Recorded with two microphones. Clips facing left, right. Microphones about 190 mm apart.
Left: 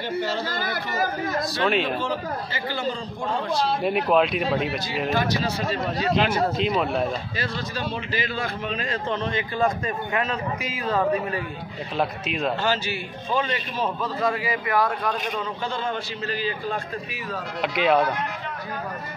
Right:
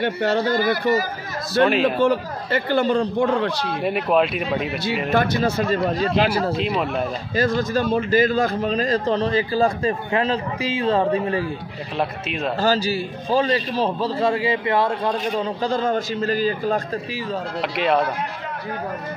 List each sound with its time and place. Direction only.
0.0 s speech: 65° right (ahead or behind)
1.7 s speech: centre (ahead or behind)
2.0 s speech: 60° right (ahead or behind)
3.8 s speech: centre (ahead or behind)
5.1 s speech: 55° right (ahead or behind)
6.1 s a man's voice: 35° right (ahead or behind)
6.6 s speech: centre (ahead or behind)
7.3 s a man's voice: 45° right (ahead or behind); by 11.4 s 30° right (ahead or behind)
12.0 s speech: centre (ahead or behind)
12.5 s a man's voice: 35° right (ahead or behind)
17.6 s speech: centre (ahead or behind)